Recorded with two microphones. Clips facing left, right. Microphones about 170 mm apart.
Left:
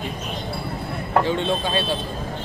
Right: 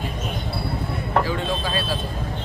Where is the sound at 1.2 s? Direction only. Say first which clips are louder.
Left 3 dB; 25° left (ahead or behind).